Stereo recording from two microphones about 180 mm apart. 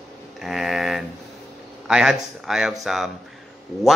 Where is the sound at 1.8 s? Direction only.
5° right (ahead or behind).